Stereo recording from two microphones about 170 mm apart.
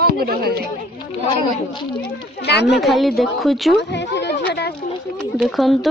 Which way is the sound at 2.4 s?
75° left (ahead or behind).